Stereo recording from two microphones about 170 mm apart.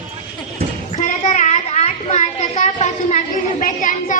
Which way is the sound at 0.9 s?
45° left (ahead or behind).